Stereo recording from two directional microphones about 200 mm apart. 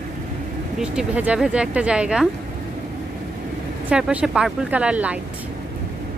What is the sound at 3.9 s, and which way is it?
Speech, 5° right (ahead or behind).